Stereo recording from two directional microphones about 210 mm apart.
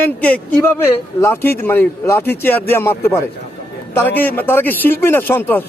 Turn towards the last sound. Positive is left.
turn(degrees=10)  # may be behind; listen again after turning